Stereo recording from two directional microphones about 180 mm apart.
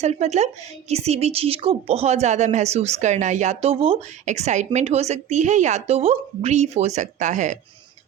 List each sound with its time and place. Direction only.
0.0 s speech: 40° right (ahead or behind)